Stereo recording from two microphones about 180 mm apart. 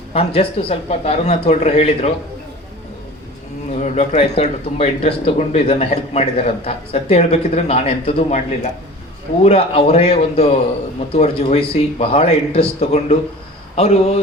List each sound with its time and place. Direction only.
0.1 s speech: 35° left (ahead or behind)
3.8 s speech: 40° left (ahead or behind)